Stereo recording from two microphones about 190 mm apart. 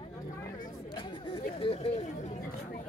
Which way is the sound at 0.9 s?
25° left (ahead or behind).